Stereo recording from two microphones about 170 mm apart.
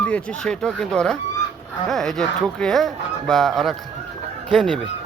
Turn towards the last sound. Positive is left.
turn(degrees=5)  # may be behind; listen again after turning